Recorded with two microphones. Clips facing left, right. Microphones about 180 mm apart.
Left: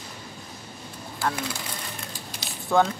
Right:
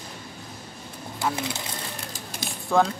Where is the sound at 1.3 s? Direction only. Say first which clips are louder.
Right 1 dB; 20° right (ahead or behind).